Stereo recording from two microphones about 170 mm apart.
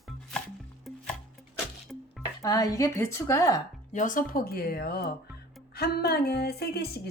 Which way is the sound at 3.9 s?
50° left (ahead or behind).